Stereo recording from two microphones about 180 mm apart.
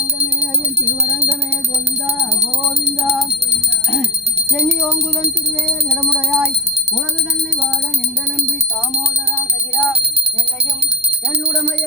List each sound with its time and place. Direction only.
2.4 s music: 40° right (ahead or behind)
5.9 s music: 15° right (ahead or behind)